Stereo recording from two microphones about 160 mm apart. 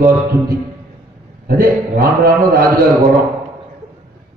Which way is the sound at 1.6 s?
65° right (ahead or behind).